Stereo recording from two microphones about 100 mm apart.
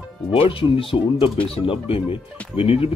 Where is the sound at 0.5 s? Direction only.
60° left (ahead or behind).